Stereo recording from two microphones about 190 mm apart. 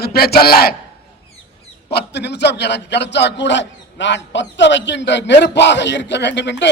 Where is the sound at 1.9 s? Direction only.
60° left (ahead or behind).